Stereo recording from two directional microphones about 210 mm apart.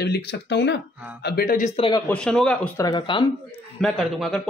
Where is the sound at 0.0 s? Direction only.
50° left (ahead or behind).